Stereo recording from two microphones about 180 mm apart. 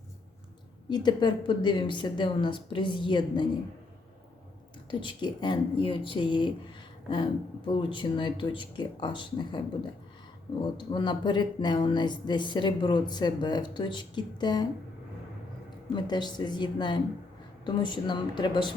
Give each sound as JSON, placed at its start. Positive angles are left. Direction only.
{"t": 0.9, "sound": "speech", "side_deg": 25}
{"t": 4.9, "sound": "speech", "side_deg": 25}
{"t": 10.9, "sound": "speech", "side_deg": 25}
{"t": 16.0, "sound": "speech", "side_deg": 25}